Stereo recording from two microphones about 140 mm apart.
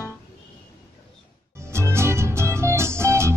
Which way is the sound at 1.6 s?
20° right (ahead or behind).